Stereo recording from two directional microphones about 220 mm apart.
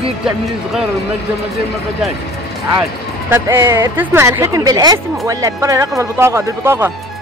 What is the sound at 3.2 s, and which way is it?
Speech, 10° right (ahead or behind).